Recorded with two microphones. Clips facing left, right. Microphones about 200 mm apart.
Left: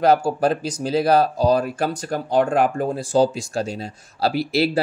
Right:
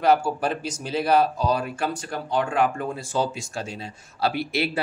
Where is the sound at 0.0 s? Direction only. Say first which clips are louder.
Left 4 dB; 40° left (ahead or behind).